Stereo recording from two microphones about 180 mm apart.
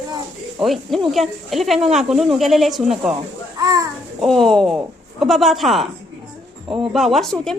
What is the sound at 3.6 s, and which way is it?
Speech, 20° right (ahead or behind).